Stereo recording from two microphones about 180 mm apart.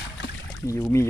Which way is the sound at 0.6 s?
15° left (ahead or behind).